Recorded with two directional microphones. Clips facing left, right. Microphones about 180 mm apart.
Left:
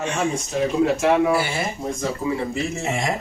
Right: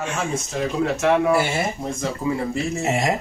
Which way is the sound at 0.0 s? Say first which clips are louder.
Left 2 dB; 5° right (ahead or behind).